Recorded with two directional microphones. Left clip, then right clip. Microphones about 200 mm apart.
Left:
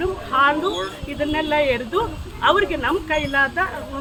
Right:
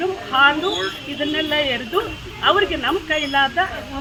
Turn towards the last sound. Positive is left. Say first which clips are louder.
# right 1 dB
turn(degrees=20)  # may be behind; listen again after turning